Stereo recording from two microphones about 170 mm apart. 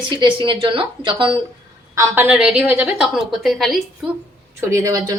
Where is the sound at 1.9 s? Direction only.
15° right (ahead or behind).